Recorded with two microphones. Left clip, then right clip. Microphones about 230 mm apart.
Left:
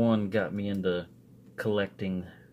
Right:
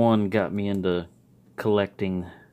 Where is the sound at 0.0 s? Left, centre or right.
Right.